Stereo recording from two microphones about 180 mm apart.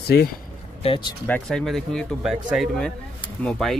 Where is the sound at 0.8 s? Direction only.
30° left (ahead or behind).